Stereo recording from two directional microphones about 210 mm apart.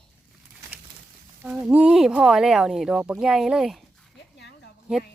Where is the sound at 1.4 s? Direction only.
5° right (ahead or behind).